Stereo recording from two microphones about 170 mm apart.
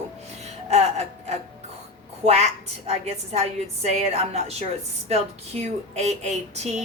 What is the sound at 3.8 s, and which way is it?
Speech, 40° right (ahead or behind).